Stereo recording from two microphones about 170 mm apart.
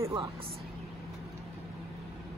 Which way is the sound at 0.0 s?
20° right (ahead or behind).